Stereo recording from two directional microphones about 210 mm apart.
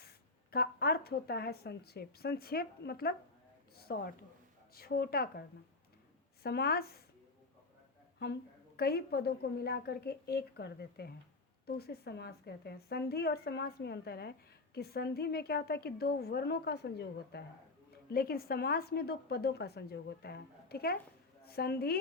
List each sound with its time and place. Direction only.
0.5 s a woman's voice: 45° left (ahead or behind)
3.8 s a sound: 50° left (ahead or behind)
4.7 s a woman's voice: 45° left (ahead or behind)
8.2 s a woman's voice: 50° left (ahead or behind)